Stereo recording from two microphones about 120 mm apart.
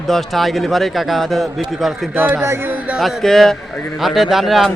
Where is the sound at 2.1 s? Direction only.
15° right (ahead or behind).